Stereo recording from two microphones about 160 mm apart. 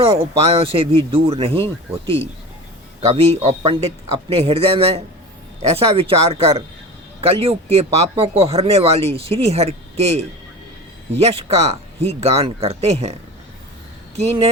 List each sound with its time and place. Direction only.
0.2 s speech: 40° right (ahead or behind)
3.2 s speech: 40° right (ahead or behind)
14.2 s speech: 40° right (ahead or behind)